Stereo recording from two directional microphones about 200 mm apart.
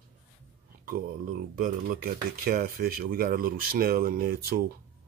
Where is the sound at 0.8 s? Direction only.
45° right (ahead or behind).